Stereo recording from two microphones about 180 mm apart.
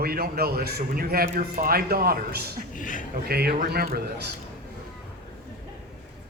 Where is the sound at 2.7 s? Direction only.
45° left (ahead or behind).